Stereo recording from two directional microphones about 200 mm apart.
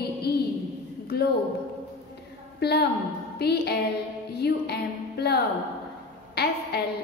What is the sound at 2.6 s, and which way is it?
A woman's voice, 55° left (ahead or behind).